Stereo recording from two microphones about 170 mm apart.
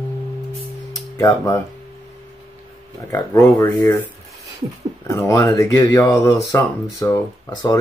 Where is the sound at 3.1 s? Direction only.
15° left (ahead or behind).